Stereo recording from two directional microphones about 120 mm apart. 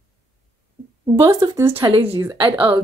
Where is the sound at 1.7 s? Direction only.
50° right (ahead or behind).